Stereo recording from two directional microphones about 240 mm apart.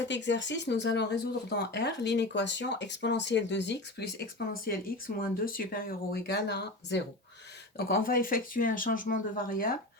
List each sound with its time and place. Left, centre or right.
0.1 s speech: left